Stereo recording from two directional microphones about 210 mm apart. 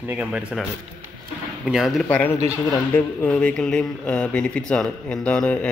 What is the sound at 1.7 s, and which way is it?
A man's voice, centre (ahead or behind).